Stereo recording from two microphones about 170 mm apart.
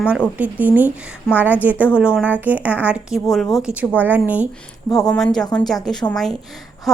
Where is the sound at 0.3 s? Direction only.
10° right (ahead or behind).